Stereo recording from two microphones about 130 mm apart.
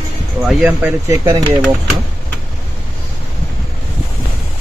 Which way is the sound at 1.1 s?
25° right (ahead or behind).